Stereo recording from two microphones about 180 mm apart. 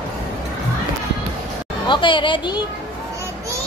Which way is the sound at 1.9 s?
25° left (ahead or behind).